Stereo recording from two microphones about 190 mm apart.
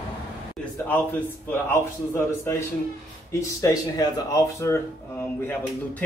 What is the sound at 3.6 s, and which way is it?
Speech, 15° left (ahead or behind).